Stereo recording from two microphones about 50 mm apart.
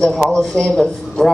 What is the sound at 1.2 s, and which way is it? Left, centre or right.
Speech, centre.